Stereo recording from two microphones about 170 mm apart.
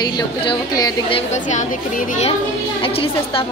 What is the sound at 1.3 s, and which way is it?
Speech, 45° left (ahead or behind).